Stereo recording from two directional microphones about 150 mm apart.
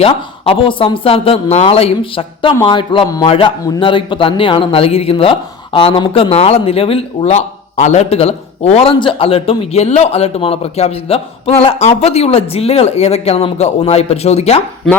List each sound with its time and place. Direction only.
0.0 s speech: 35° left (ahead or behind)